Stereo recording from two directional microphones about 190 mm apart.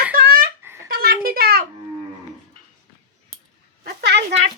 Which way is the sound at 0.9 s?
55° right (ahead or behind).